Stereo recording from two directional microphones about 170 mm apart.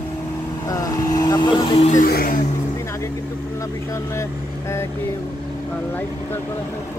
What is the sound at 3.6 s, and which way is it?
Speech, 15° left (ahead or behind).